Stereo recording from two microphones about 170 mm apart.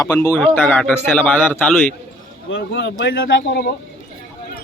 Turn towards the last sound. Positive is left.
turn(degrees=65)  # may be behind; listen again after turning